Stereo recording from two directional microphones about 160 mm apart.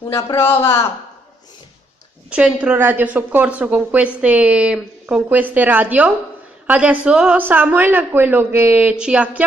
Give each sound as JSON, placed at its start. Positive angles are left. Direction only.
{"t": 0.1, "sound": "a man's voice", "side_deg": 15}
{"t": 2.2, "sound": "a woman's voice", "side_deg": -5}